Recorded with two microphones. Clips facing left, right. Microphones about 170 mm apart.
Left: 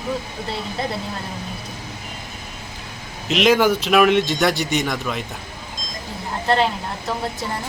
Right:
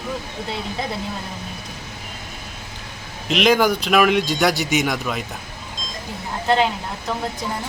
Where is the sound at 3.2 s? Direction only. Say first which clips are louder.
Left 1 dB; centre (ahead or behind).